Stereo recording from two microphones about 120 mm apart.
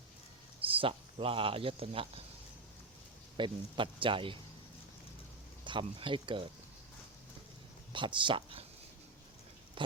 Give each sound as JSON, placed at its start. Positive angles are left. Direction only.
{"t": 0.8, "sound": "speech", "side_deg": -50}
{"t": 3.3, "sound": "speech", "side_deg": -45}
{"t": 5.6, "sound": "speech", "side_deg": -45}
{"t": 7.9, "sound": "speech", "side_deg": -40}
{"t": 9.8, "sound": "a sound", "side_deg": -45}